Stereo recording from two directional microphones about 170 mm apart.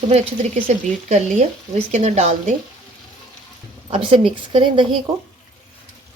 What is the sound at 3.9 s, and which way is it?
Speech, 30° right (ahead or behind).